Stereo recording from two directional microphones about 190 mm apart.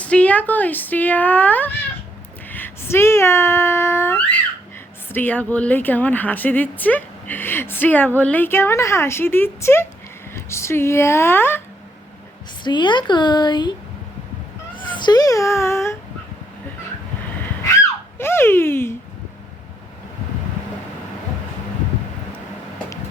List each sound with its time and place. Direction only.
0.0 s speech: 5° left (ahead or behind)
12.6 s speech: 25° left (ahead or behind)
14.8 s a child's voice: 25° left (ahead or behind)
18.2 s speech: 10° left (ahead or behind)